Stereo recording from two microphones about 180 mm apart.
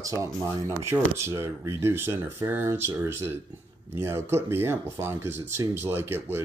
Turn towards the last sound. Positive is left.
turn(degrees=-15)  # may be behind; listen again after turning